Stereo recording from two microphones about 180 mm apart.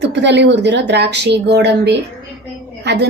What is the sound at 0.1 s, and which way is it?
A woman's voice, 75° right (ahead or behind).